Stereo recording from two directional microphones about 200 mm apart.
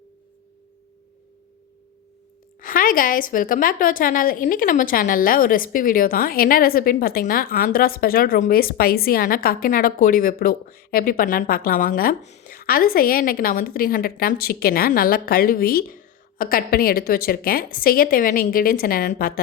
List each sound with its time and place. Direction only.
2.6 s a woman's voice: 45° left (ahead or behind)